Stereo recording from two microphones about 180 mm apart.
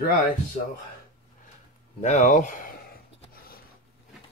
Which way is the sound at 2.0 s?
40° left (ahead or behind).